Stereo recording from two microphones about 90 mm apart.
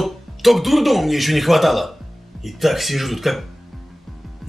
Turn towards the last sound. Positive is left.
turn(degrees=0)  # may be behind; listen again after turning